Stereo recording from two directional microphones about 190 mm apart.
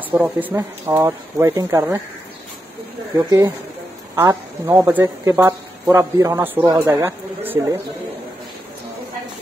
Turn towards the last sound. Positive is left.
turn(degrees=-10)  # may be behind; listen again after turning